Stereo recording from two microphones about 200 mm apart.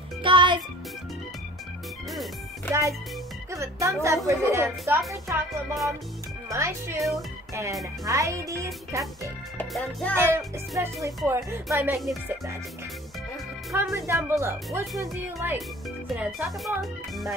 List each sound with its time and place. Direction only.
0.2 s music: 25° right (ahead or behind)
2.7 s speech: 15° right (ahead or behind)
6.5 s speech: 15° right (ahead or behind)
7.0 s speech: centre (ahead or behind)
8.0 s speech: 15° right (ahead or behind)
9.6 s speech: 5° left (ahead or behind)
10.1 s speech: 10° right (ahead or behind)
13.7 s speech: centre (ahead or behind)
13.9 s speech: 15° right (ahead or behind)